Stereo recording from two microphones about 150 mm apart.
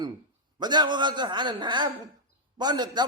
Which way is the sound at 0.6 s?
30° right (ahead or behind).